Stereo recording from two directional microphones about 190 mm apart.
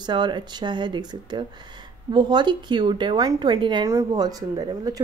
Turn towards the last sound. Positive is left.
turn(degrees=-20)  # may be behind; listen again after turning